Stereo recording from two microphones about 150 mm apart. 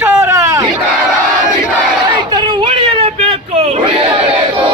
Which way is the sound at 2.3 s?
30° right (ahead or behind).